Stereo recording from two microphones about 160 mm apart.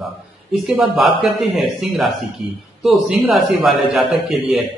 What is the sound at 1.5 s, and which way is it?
A man's voice, centre (ahead or behind).